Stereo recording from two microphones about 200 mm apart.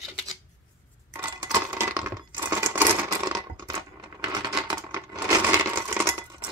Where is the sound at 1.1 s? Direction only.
15° right (ahead or behind).